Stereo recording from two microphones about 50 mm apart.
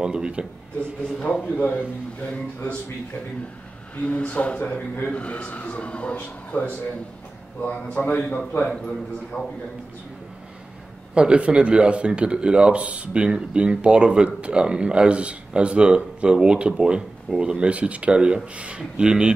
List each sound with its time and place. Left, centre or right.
0.0 s speech: centre
3.9 s a man's voice: left
6.1 s a man's voice: left
8.6 s a man's voice: centre
11.1 s speech: right